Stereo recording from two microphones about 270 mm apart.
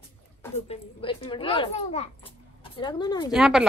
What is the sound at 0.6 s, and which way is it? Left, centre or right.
A child's voice, centre.